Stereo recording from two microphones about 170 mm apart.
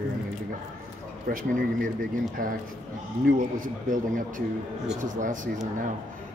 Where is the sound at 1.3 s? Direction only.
55° right (ahead or behind).